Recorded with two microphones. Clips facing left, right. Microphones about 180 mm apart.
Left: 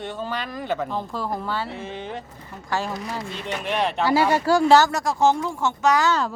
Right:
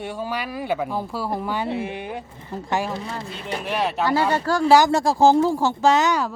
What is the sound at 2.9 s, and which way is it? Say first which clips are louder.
Speech: even; 30° right (ahead or behind).